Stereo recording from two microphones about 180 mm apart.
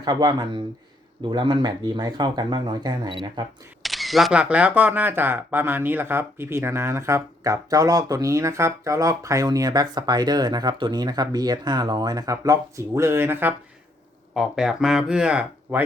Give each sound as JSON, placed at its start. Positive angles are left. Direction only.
{"t": 0.0, "sound": "speech", "side_deg": -20}
{"t": 3.8, "sound": "speech", "side_deg": 0}